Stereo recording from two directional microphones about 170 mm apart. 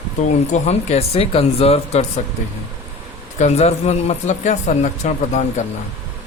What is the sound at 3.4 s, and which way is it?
Speech, 40° left (ahead or behind).